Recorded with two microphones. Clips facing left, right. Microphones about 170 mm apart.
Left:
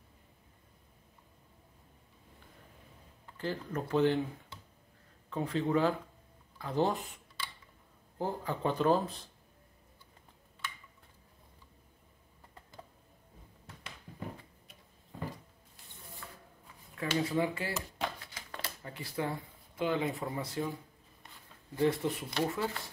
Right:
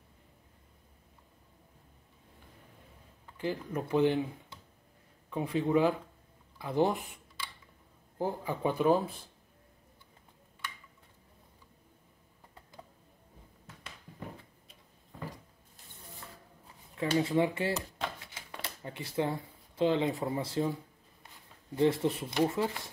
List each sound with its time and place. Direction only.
3.3 s speech: 10° right (ahead or behind)
5.3 s speech: 15° right (ahead or behind)
16.9 s speech: 20° right (ahead or behind)
21.7 s speech: 20° right (ahead or behind)